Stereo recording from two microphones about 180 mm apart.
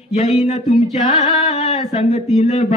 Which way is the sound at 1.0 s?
35° left (ahead or behind).